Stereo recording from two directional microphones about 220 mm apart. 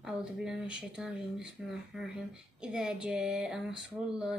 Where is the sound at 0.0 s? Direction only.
5° right (ahead or behind).